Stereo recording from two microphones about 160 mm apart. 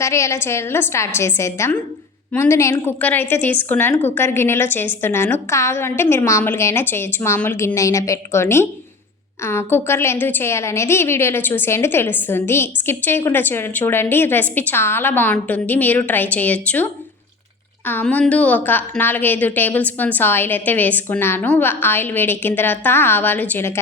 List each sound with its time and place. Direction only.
0.0 s a woman's voice: 20° left (ahead or behind)